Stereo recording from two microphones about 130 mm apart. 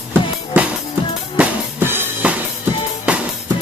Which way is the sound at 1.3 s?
15° right (ahead or behind).